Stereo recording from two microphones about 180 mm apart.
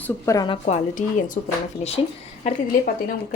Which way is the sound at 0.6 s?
45° left (ahead or behind).